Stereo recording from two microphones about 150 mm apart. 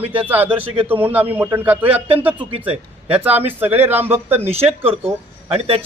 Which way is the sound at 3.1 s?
10° right (ahead or behind).